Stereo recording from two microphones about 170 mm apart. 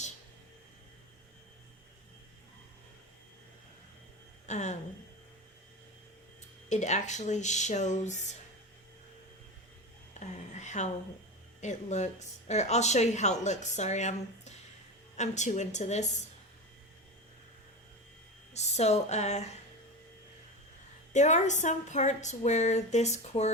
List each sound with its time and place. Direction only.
4.4 s speech: 45° left (ahead or behind)
6.7 s speech: 45° left (ahead or behind)
10.2 s a sound: 45° left (ahead or behind)
11.6 s speech: 45° left (ahead or behind)
18.5 s speech: 40° left (ahead or behind)
21.1 s speech: 45° left (ahead or behind)